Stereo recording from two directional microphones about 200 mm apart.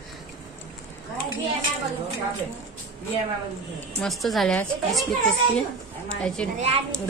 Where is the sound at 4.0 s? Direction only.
Centre (ahead or behind).